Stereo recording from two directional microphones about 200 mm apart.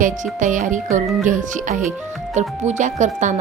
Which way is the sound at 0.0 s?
40° right (ahead or behind).